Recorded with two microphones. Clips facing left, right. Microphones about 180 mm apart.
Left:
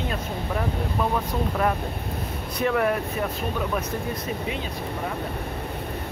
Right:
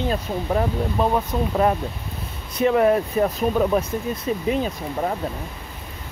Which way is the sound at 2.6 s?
25° right (ahead or behind).